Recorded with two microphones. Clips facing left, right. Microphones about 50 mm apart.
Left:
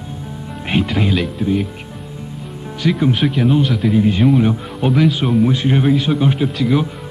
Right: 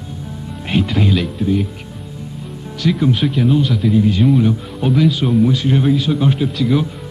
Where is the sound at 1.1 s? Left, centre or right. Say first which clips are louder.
Even; centre.